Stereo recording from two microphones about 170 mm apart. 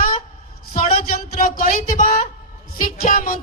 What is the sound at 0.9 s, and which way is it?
A man's voice, 55° left (ahead or behind).